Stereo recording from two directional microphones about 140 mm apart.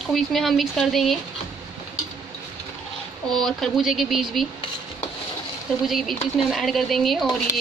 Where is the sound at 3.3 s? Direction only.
5° left (ahead or behind).